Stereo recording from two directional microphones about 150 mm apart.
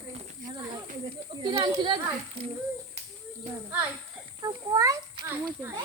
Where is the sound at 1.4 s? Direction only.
30° right (ahead or behind).